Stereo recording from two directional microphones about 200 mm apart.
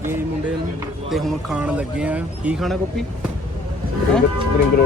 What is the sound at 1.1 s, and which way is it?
Speech, centre (ahead or behind).